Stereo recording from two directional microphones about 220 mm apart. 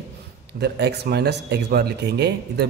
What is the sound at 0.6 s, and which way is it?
A man's voice, 50° right (ahead or behind).